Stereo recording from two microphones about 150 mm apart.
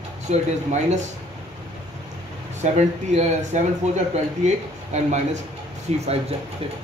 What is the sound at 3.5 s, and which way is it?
Speech, 50° right (ahead or behind).